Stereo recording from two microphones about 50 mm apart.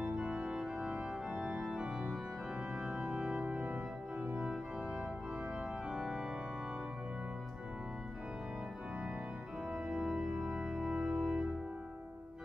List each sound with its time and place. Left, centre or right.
0.0 s organ: centre
3.0 s organ: centre
3.4 s music: right
4.2 s organ: right
5.9 s organ: centre
9.7 s organ: centre